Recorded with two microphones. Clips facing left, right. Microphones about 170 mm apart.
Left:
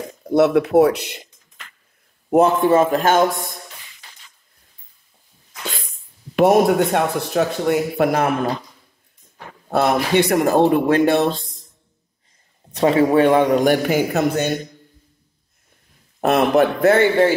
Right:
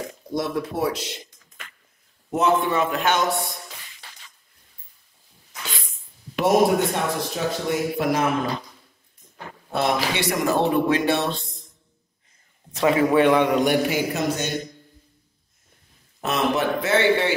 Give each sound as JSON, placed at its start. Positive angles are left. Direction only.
{"t": 0.3, "sound": "speech", "side_deg": 75}
{"t": 2.3, "sound": "speech", "side_deg": 45}
{"t": 6.3, "sound": "speech", "side_deg": 60}
{"t": 9.7, "sound": "speech", "side_deg": 60}
{"t": 10.1, "sound": "speech", "side_deg": 50}
{"t": 12.7, "sound": "a man's voice", "side_deg": 30}
{"t": 16.2, "sound": "speech", "side_deg": 55}